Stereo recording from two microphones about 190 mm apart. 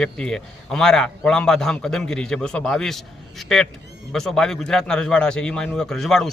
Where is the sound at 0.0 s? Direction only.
5° left (ahead or behind).